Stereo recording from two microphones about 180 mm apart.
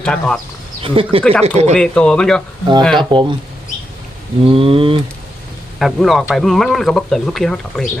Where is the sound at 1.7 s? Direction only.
5° left (ahead or behind).